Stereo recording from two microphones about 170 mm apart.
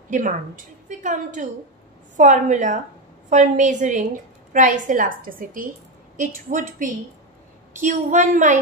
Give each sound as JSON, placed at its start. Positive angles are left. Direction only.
{"t": 0.1, "sound": "a woman's voice", "side_deg": -50}
{"t": 7.7, "sound": "a woman's voice", "side_deg": -50}